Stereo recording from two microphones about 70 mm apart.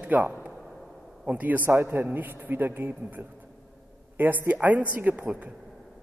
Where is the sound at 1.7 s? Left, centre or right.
Right.